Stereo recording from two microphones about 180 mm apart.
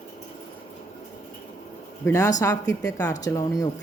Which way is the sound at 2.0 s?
15° left (ahead or behind).